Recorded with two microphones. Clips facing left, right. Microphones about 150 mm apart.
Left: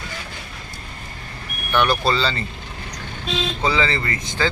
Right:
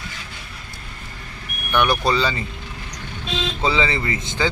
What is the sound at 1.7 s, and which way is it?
Speech, 15° right (ahead or behind).